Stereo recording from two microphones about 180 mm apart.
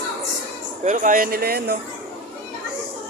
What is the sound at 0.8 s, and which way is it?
Speech, 45° right (ahead or behind).